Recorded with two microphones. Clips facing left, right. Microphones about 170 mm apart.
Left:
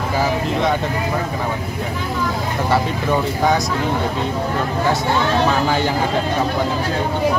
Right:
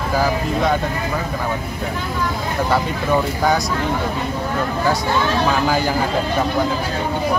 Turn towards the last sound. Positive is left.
turn(degrees=0)  # may be behind; listen again after turning